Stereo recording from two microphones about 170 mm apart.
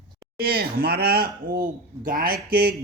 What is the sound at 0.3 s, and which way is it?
Speech, 65° right (ahead or behind).